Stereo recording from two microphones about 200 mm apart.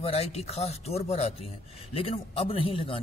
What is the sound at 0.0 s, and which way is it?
Speech, 30° left (ahead or behind).